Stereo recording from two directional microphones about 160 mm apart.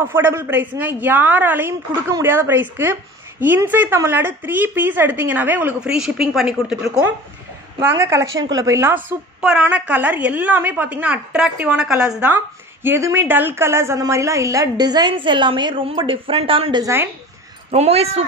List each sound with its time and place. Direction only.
0.0 s a woman's voice: 15° right (ahead or behind)
7.8 s a woman's voice: 15° right (ahead or behind); by 16.8 s 35° right (ahead or behind)
16.8 s a woman's voice: 15° right (ahead or behind)
17.6 s a woman's voice: 45° right (ahead or behind)